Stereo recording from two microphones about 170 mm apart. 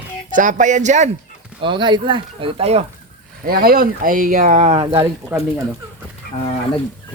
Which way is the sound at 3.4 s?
60° right (ahead or behind).